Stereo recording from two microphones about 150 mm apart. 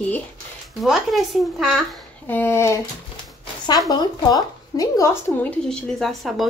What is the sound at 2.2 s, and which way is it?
Speech, 15° left (ahead or behind).